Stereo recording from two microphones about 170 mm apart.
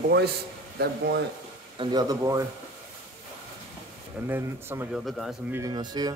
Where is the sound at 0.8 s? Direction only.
70° right (ahead or behind).